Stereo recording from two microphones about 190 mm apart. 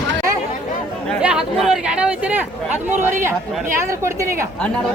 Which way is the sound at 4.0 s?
15° right (ahead or behind).